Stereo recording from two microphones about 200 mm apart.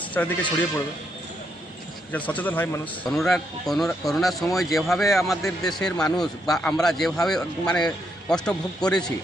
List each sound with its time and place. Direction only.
0.0 s music: 10° left (ahead or behind)
2.1 s a man's voice: 10° left (ahead or behind)